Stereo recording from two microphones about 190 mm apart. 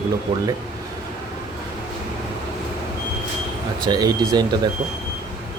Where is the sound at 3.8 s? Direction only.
20° right (ahead or behind).